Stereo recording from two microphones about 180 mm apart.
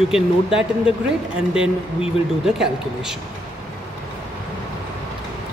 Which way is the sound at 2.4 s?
5° right (ahead or behind).